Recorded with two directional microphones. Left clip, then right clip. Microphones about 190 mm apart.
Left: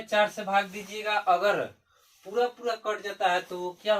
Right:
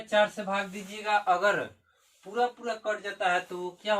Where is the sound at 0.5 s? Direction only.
10° right (ahead or behind).